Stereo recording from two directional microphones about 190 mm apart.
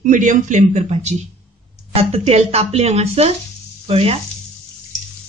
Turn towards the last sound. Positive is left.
turn(degrees=-30)  # may be behind; listen again after turning